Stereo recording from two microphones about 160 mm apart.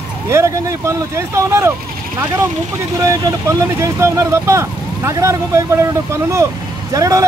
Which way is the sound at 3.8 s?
20° right (ahead or behind).